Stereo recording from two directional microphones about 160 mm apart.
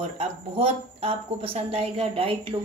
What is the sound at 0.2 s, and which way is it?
A woman's voice, 35° right (ahead or behind).